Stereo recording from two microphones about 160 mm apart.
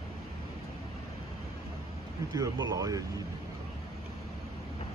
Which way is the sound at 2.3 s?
20° right (ahead or behind).